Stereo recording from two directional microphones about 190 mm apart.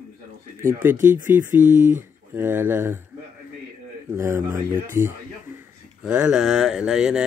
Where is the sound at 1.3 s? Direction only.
10° right (ahead or behind).